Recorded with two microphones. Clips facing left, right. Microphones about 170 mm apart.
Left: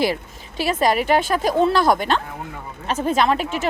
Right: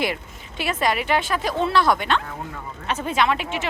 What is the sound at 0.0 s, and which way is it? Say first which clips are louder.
Speech: left 4 dB; 35° left (ahead or behind).